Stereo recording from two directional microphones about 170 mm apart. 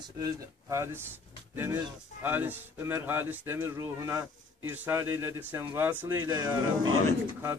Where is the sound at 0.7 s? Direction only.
15° right (ahead or behind).